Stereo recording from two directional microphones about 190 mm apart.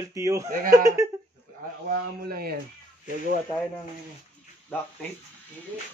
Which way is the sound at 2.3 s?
55° right (ahead or behind).